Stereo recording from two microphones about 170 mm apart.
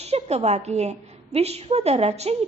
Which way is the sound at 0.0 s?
40° right (ahead or behind).